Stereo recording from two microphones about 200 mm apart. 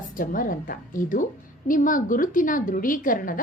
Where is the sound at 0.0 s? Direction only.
40° left (ahead or behind).